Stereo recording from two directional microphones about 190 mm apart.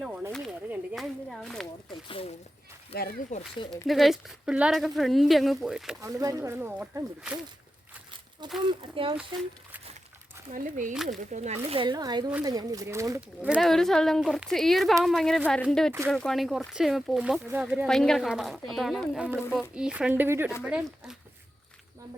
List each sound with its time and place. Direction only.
0.0 s a sound: 10° right (ahead or behind)
1.9 s a sound: 30° left (ahead or behind)
3.3 s speech: 40° left (ahead or behind)
3.8 s speech: centre (ahead or behind)
6.0 s speech: 15° right (ahead or behind)
8.8 s speech: 25° right (ahead or behind)
10.5 s speech: 40° right (ahead or behind)
10.9 s speech: centre (ahead or behind)
11.2 s speech: 40° right (ahead or behind); by 15.9 s 5° left (ahead or behind)
15.9 s speech: 10° right (ahead or behind)
16.1 s speech: centre (ahead or behind)